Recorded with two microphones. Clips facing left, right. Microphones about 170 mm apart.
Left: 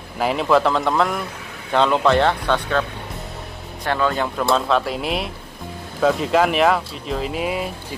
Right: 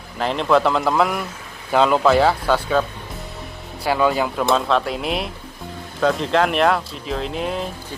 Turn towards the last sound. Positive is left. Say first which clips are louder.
# left 1 dB
turn(degrees=5)  # may be behind; listen again after turning